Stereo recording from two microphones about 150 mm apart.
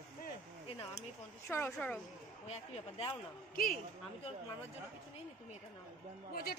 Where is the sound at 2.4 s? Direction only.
45° left (ahead or behind).